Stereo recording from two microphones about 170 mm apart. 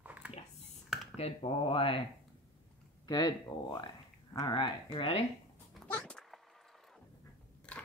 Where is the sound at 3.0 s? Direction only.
25° left (ahead or behind).